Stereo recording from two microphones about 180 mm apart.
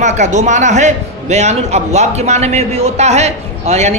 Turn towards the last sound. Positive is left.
turn(degrees=-40)  # may be behind; listen again after turning